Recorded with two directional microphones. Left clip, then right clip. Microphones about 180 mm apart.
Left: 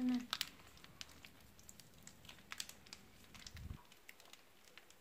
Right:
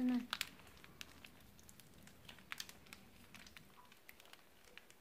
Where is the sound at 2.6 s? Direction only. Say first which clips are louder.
Left 5 dB; 5° right (ahead or behind).